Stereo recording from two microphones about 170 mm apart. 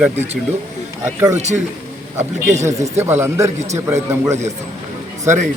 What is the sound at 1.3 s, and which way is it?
Speech, 45° right (ahead or behind).